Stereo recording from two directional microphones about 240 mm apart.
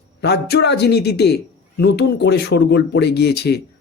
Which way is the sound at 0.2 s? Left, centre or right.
Left.